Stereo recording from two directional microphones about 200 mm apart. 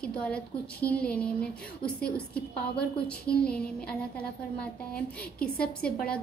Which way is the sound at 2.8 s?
50° left (ahead or behind).